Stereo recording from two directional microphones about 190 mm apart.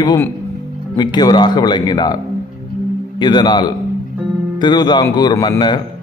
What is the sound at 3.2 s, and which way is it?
Speech, 25° left (ahead or behind).